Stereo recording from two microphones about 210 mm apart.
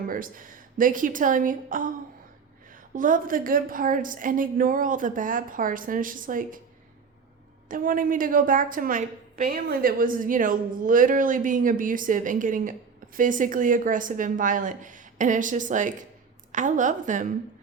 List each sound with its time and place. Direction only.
0.1 s a woman's voice: 40° right (ahead or behind)
2.9 s a woman's voice: 40° right (ahead or behind)
7.7 s a woman's voice: 40° right (ahead or behind)